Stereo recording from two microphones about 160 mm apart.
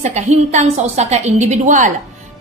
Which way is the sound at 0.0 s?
45° right (ahead or behind).